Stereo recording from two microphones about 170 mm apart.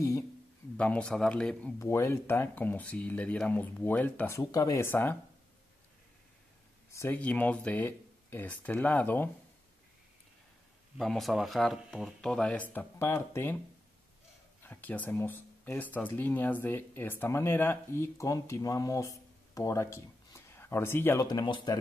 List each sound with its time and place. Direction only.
0.7 s speech: 5° left (ahead or behind)
6.9 s speech: 15° left (ahead or behind)
11.0 s speech: centre (ahead or behind)
14.6 s speech: 10° left (ahead or behind)
21.3 s speech: 25° left (ahead or behind)